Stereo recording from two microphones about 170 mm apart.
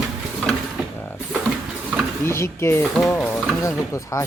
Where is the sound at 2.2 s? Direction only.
15° left (ahead or behind).